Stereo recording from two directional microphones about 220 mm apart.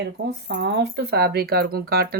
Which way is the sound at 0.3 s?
50° right (ahead or behind).